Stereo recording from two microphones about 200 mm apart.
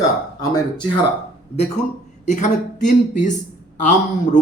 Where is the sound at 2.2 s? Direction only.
40° left (ahead or behind).